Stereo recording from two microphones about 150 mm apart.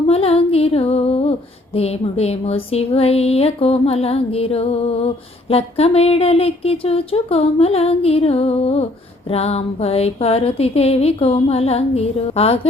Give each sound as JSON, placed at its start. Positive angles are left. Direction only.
{"t": 0.1, "sound": "music", "side_deg": 40}
{"t": 1.7, "sound": "speech", "side_deg": 45}
{"t": 9.3, "sound": "a sound", "side_deg": 45}